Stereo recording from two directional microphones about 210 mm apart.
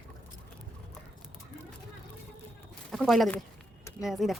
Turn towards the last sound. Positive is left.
turn(degrees=0)  # may be behind; listen again after turning